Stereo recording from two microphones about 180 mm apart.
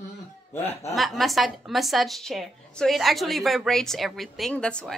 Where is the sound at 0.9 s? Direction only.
Centre (ahead or behind).